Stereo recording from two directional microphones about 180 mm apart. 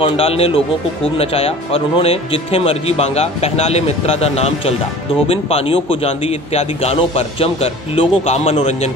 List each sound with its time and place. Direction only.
0.0 s speech: 30° left (ahead or behind)